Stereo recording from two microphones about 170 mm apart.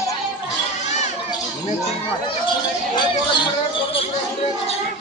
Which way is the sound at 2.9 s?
25° left (ahead or behind).